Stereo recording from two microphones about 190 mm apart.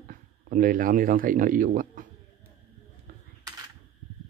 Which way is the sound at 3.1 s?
45° right (ahead or behind).